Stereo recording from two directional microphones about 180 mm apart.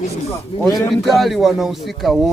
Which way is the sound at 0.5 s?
35° left (ahead or behind).